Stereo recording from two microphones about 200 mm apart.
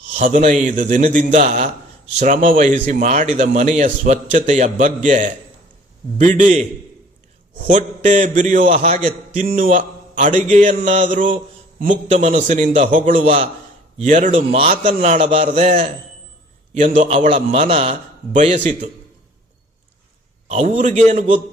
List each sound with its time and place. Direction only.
0.1 s a man's voice: 35° right (ahead or behind)
7.7 s a man's voice: 40° right (ahead or behind)
20.5 s a man's voice: 35° right (ahead or behind)